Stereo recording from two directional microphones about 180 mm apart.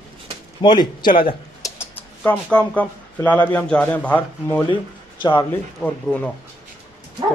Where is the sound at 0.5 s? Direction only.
25° left (ahead or behind).